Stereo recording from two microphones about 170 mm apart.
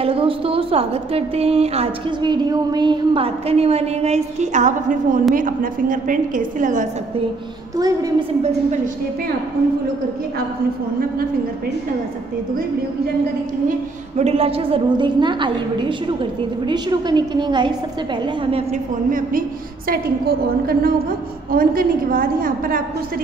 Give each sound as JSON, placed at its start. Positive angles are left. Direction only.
{"t": 0.0, "sound": "a woman's voice", "side_deg": -35}
{"t": 7.7, "sound": "a woman's voice", "side_deg": -20}
{"t": 13.7, "sound": "a woman's voice", "side_deg": -40}
{"t": 19.0, "sound": "a woman's voice", "side_deg": -55}